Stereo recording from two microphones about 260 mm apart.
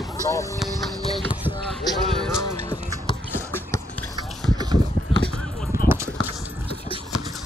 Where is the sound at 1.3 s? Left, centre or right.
Centre.